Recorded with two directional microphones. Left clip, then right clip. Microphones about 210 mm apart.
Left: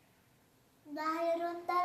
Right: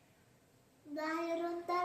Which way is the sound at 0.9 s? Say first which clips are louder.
Left 4 dB; 20° left (ahead or behind).